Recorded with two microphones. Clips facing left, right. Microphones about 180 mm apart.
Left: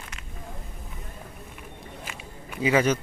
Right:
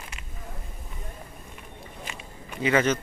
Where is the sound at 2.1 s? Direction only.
5° left (ahead or behind).